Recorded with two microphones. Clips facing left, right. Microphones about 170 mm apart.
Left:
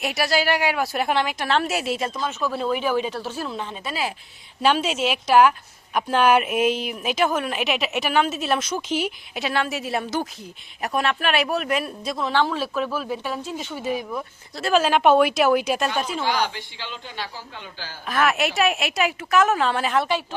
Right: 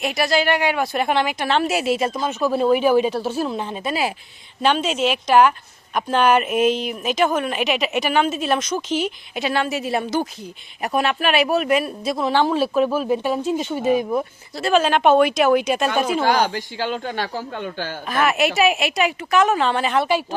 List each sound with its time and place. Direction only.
0.0 s a woman's voice: 5° left (ahead or behind); by 4.1 s 10° right (ahead or behind)
4.6 s a woman's voice: 5° left (ahead or behind); by 14.3 s 25° right (ahead or behind)
14.6 s a woman's voice: 5° left (ahead or behind)
16.2 s speech: 45° right (ahead or behind)
18.1 s a woman's voice: centre (ahead or behind)